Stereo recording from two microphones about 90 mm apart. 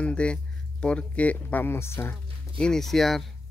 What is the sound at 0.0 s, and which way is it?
Speech, 10° left (ahead or behind).